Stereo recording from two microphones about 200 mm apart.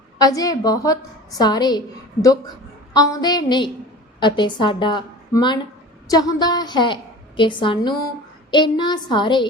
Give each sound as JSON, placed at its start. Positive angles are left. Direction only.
{"t": 0.2, "sound": "a woman's voice", "side_deg": 20}
{"t": 2.9, "sound": "a woman's voice", "side_deg": 20}